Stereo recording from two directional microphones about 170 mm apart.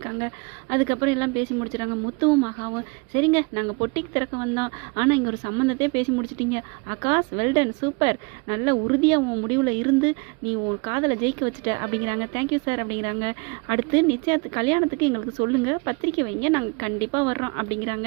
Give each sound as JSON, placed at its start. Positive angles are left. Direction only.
{"t": 0.7, "sound": "speech", "side_deg": -20}